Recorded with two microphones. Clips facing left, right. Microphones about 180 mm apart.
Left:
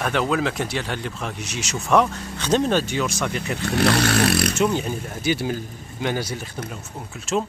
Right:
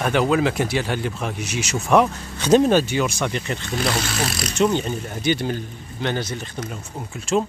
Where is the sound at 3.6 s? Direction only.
65° left (ahead or behind).